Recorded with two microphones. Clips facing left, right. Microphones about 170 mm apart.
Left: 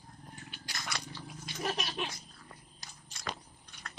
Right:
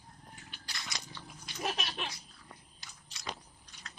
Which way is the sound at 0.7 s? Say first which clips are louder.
Left 4 dB; 55° left (ahead or behind).